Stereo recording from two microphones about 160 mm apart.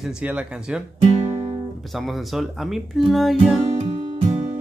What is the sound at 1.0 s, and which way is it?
Music, 40° right (ahead or behind).